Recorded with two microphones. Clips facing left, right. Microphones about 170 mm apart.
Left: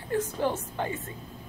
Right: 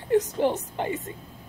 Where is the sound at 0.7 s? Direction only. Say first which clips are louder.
Right 3 dB; 20° right (ahead or behind).